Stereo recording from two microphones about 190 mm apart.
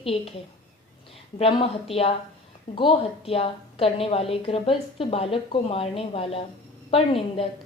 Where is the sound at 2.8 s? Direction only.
30° left (ahead or behind).